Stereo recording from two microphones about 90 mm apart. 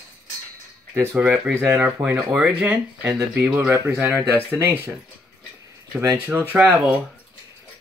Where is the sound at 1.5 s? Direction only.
25° right (ahead or behind).